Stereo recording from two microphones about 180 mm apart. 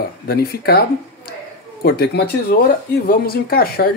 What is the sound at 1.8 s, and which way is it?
Speech, 60° left (ahead or behind).